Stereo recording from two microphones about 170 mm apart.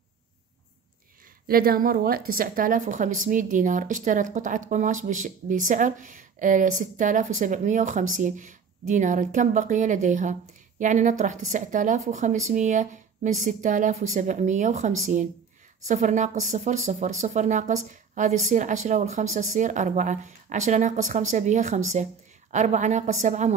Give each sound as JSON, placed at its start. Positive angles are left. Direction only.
{"t": 1.5, "sound": "a woman's voice", "side_deg": -60}